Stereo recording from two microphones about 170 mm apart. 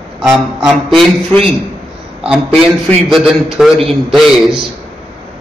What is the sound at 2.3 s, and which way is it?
A man's voice, centre (ahead or behind).